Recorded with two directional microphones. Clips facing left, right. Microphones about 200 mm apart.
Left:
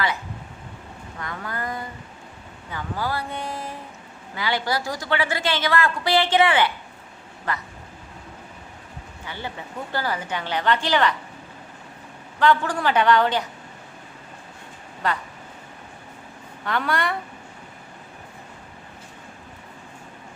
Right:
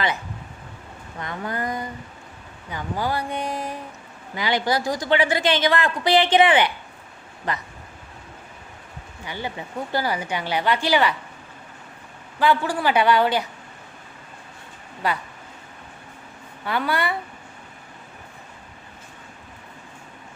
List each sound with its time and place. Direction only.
1.2 s a woman's voice: 20° right (ahead or behind)
9.2 s a woman's voice: 15° right (ahead or behind)
12.4 s a woman's voice: 10° right (ahead or behind)
15.0 s a woman's voice: 10° right (ahead or behind)
16.6 s speech: 5° right (ahead or behind)